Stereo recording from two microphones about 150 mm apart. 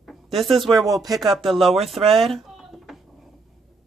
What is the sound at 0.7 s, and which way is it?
Speech, 25° right (ahead or behind).